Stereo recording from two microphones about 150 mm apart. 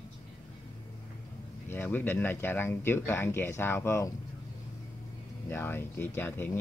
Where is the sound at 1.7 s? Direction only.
15° left (ahead or behind).